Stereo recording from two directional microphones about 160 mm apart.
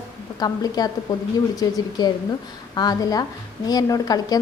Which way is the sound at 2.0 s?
25° left (ahead or behind).